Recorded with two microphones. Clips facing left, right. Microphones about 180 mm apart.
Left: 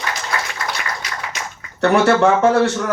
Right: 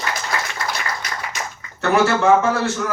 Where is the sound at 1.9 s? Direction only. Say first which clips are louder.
Left 1 dB; 65° left (ahead or behind).